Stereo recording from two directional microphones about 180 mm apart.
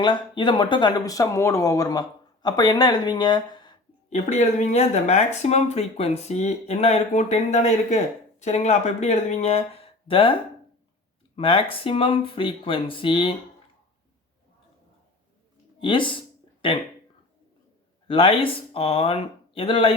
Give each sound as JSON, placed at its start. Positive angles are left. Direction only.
{"t": 0.0, "sound": "speech", "side_deg": 25}
{"t": 4.1, "sound": "speech", "side_deg": 40}
{"t": 11.3, "sound": "speech", "side_deg": 30}
{"t": 15.8, "sound": "a sound", "side_deg": 25}
{"t": 18.1, "sound": "speech", "side_deg": 30}